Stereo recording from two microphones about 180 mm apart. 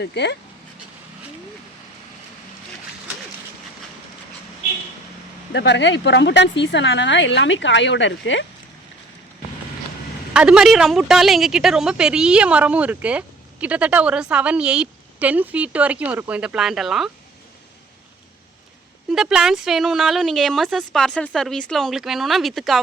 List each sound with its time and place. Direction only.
0.0 s speech: 70° left (ahead or behind)
5.5 s speech: 75° left (ahead or behind)
10.3 s a woman's voice: 5° right (ahead or behind)
19.1 s a woman's voice: 5° right (ahead or behind)